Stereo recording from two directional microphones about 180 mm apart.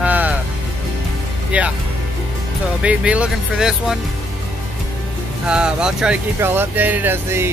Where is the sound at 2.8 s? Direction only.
5° right (ahead or behind).